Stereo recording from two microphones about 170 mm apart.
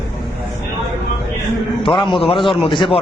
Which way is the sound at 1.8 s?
30° left (ahead or behind).